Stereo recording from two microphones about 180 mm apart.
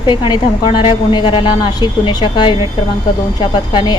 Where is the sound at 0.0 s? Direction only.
25° left (ahead or behind).